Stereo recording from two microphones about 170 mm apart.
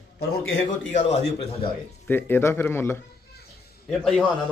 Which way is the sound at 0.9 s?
45° left (ahead or behind).